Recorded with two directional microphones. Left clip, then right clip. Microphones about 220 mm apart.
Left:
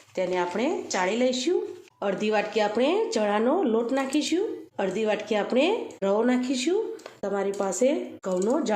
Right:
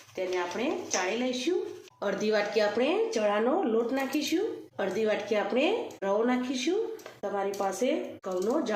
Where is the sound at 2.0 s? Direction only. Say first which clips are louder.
Left 2 dB; 25° left (ahead or behind).